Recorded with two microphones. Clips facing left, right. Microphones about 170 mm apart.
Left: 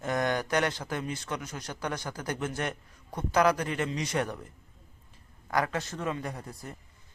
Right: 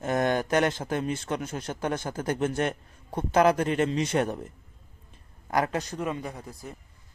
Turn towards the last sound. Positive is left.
turn(degrees=0)  # may be behind; listen again after turning